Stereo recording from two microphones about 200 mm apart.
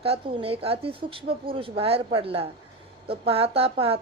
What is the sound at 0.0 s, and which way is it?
Speech, 30° right (ahead or behind).